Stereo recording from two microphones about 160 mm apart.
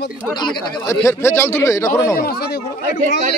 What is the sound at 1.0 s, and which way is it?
Speech, 15° left (ahead or behind).